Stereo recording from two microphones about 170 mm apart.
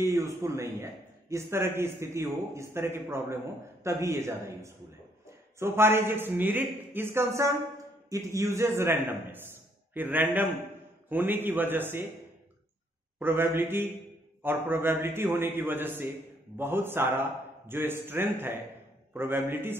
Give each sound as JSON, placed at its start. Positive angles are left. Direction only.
{"t": 0.0, "sound": "a man's voice", "side_deg": -15}
{"t": 13.2, "sound": "a man's voice", "side_deg": -15}